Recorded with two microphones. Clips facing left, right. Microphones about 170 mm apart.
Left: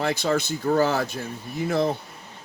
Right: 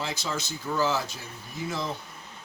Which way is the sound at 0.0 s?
60° left (ahead or behind).